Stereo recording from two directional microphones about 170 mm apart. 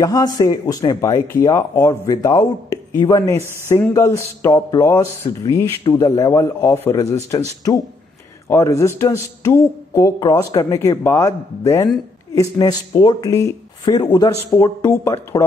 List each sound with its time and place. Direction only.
0.0 s speech: 20° left (ahead or behind)
8.5 s speech: 15° left (ahead or behind)